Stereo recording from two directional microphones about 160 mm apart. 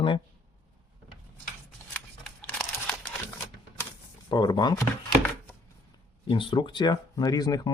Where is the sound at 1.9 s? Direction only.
5° left (ahead or behind).